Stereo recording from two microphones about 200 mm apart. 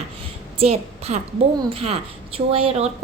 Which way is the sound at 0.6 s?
30° right (ahead or behind).